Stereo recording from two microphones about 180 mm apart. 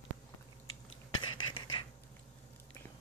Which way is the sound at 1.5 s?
25° left (ahead or behind).